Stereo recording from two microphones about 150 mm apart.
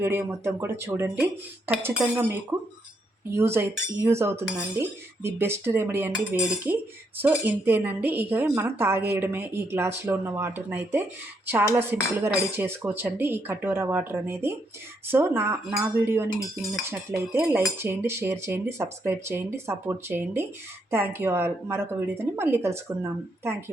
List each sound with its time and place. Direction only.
0.0 s speech: 15° right (ahead or behind)
6.4 s cutlery: 5° right (ahead or behind)
7.2 s speech: 10° right (ahead or behind)